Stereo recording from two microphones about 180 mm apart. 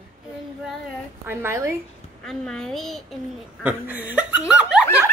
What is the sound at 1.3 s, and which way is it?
Speech, 15° right (ahead or behind).